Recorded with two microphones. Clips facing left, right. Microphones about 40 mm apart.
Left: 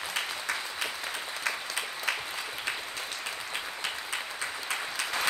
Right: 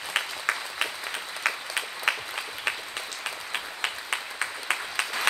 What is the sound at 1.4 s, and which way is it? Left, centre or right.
Applause, right.